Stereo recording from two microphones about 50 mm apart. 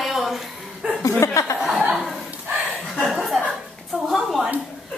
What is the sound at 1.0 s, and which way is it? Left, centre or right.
Chuckle, left.